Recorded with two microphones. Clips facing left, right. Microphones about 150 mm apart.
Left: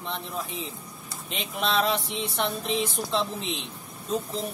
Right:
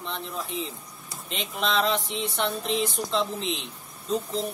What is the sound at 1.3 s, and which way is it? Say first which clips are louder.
Speech: even; 5° left (ahead or behind).